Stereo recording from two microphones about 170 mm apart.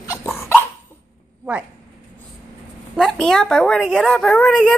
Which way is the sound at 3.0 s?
Centre (ahead or behind).